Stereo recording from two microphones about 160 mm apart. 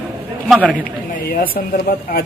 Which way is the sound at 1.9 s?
65° left (ahead or behind).